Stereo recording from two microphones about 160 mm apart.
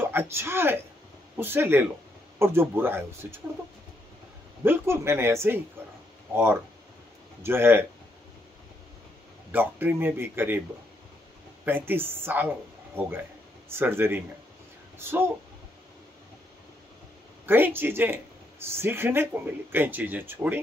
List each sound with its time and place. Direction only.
0.0 s speech: 15° right (ahead or behind)
4.6 s speech: 15° right (ahead or behind)
9.5 s speech: 10° right (ahead or behind)
11.6 s speech: 10° right (ahead or behind)
17.5 s speech: 10° right (ahead or behind)